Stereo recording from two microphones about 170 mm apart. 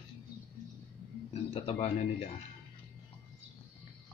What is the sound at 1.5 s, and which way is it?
Speech, 35° left (ahead or behind).